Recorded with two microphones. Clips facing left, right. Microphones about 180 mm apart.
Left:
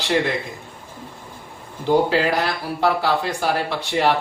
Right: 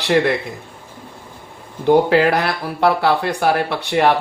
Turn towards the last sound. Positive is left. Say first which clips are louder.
# right 4 dB
turn(degrees=-60)  # may be behind; listen again after turning